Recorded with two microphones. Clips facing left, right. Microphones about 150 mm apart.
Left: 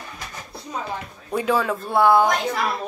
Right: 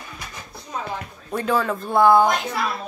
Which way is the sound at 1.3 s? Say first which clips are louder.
Left 1 dB; 5° left (ahead or behind).